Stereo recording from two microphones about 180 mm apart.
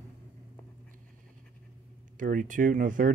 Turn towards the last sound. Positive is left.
turn(degrees=-50)  # may be behind; listen again after turning